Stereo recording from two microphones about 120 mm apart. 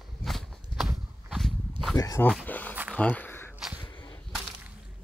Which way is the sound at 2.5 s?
15° left (ahead or behind).